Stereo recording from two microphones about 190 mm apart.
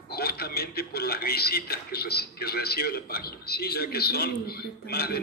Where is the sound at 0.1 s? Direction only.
55° left (ahead or behind).